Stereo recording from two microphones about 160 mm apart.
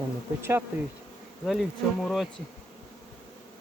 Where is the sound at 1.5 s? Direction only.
Centre (ahead or behind).